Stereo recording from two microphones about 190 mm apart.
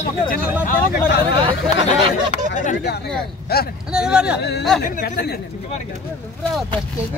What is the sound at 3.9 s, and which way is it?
Speech, 5° right (ahead or behind).